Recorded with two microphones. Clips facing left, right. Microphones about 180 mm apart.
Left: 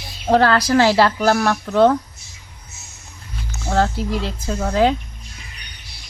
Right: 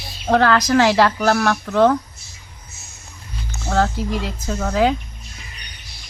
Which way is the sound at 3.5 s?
10° left (ahead or behind).